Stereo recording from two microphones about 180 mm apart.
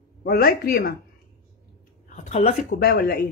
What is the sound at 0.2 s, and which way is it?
Speech, 55° left (ahead or behind).